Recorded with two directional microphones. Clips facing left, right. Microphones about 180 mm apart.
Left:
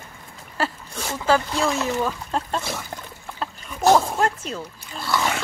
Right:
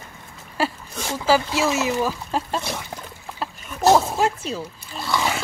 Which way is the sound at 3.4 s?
5° right (ahead or behind).